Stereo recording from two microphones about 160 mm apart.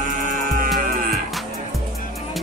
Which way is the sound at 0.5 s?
60° right (ahead or behind).